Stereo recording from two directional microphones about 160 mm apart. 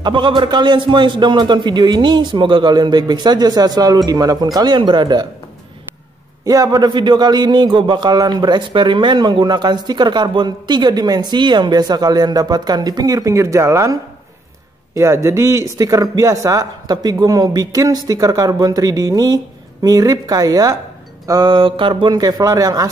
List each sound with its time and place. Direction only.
0.0 s a man's voice: 30° right (ahead or behind)
6.4 s a man's voice: 20° right (ahead or behind)
15.0 s a man's voice: 15° right (ahead or behind)